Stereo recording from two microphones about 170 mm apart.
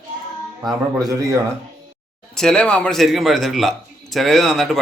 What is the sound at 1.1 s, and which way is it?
Speech, 20° right (ahead or behind).